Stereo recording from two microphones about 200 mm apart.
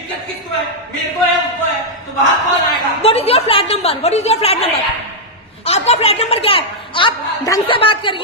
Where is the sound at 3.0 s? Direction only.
30° left (ahead or behind).